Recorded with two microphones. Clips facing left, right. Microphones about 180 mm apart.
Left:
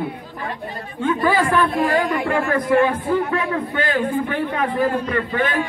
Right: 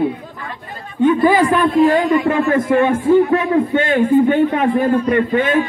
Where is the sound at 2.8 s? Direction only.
25° right (ahead or behind).